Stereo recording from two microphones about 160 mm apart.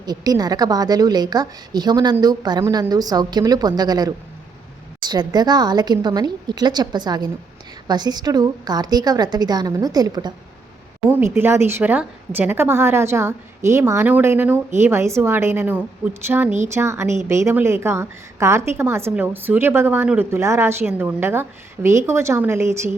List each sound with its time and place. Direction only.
0.0 s a woman's voice: 25° right (ahead or behind)
11.1 s a woman's voice: 15° right (ahead or behind)